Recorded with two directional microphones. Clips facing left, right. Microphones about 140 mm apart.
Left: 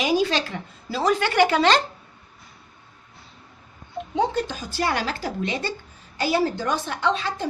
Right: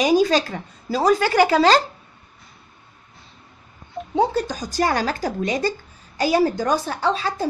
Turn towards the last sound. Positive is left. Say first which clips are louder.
# right 2 dB
turn(degrees=-35)  # may be behind; listen again after turning